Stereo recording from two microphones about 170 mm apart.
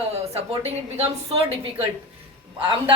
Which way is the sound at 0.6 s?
35° right (ahead or behind).